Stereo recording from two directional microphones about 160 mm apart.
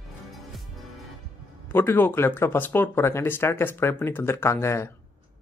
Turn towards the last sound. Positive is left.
turn(degrees=15)  # may be behind; listen again after turning